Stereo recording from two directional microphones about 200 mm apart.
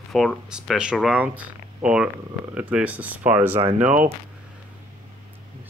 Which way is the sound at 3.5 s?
35° right (ahead or behind).